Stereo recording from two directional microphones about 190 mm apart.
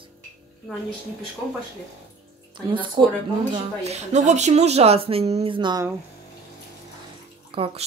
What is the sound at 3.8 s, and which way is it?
Speech, 35° right (ahead or behind).